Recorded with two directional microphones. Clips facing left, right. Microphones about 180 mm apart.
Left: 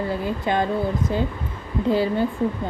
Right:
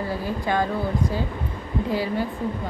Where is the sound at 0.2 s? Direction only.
20° left (ahead or behind).